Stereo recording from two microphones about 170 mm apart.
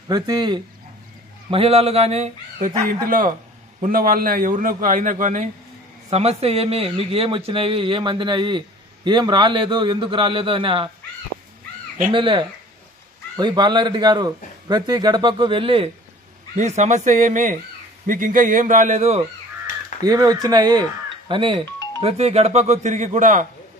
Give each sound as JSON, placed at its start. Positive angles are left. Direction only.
{"t": 0.1, "sound": "a man's voice", "side_deg": -25}
{"t": 1.5, "sound": "speech", "side_deg": -35}
{"t": 3.1, "sound": "a man's voice", "side_deg": -55}
{"t": 12.1, "sound": "a man's voice", "side_deg": -30}
{"t": 16.5, "sound": "a man's voice", "side_deg": -45}
{"t": 20.0, "sound": "a man's voice", "side_deg": -25}